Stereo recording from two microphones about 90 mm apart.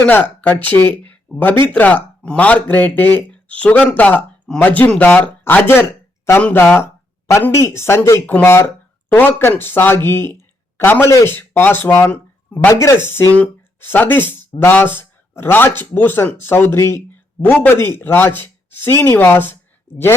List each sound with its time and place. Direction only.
0.0 s speech: 20° left (ahead or behind)
12.7 s speech: 35° left (ahead or behind)
13.3 s speech: 15° left (ahead or behind)